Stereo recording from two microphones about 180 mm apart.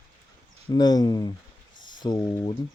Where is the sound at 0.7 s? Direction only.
20° left (ahead or behind).